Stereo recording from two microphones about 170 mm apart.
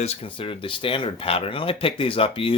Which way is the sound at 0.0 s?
35° left (ahead or behind).